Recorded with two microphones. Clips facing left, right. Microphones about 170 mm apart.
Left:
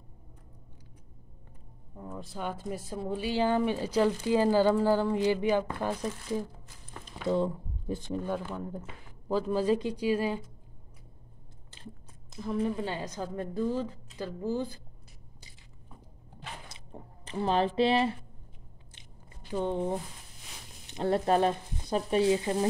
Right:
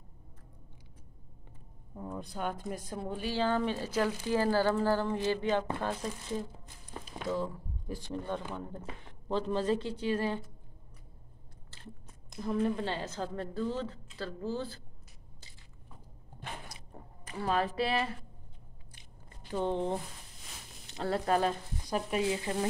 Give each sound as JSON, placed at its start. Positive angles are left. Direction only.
{"t": 2.0, "sound": "speech", "side_deg": 0}
{"t": 7.2, "sound": "speech", "side_deg": 25}
{"t": 11.7, "sound": "chewing", "side_deg": 15}
{"t": 12.4, "sound": "speech", "side_deg": 0}
{"t": 16.6, "sound": "squish", "side_deg": 25}
{"t": 19.5, "sound": "speech", "side_deg": 5}
{"t": 20.9, "sound": "speech", "side_deg": 20}